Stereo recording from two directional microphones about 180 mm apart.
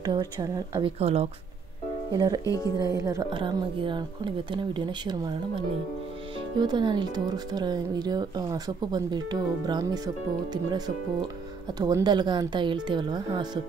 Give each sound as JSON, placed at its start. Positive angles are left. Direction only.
{"t": 0.0, "sound": "speech", "side_deg": -20}
{"t": 0.9, "sound": "speech", "side_deg": -35}
{"t": 2.1, "sound": "speech", "side_deg": -25}
{"t": 2.4, "sound": "speech", "side_deg": 20}
{"t": 2.8, "sound": "speech", "side_deg": -20}
{"t": 6.5, "sound": "speech", "side_deg": -25}